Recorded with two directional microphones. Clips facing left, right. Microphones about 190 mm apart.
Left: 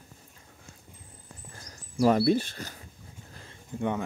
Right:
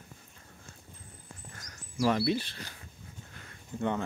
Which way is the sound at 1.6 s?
30° left (ahead or behind).